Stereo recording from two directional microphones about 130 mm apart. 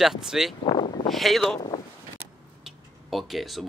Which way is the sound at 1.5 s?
40° left (ahead or behind).